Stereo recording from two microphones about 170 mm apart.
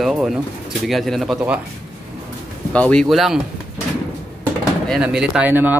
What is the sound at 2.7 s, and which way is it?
Speech, 5° left (ahead or behind).